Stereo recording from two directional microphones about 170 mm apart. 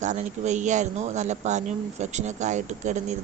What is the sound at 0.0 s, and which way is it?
A woman's voice, 45° right (ahead or behind).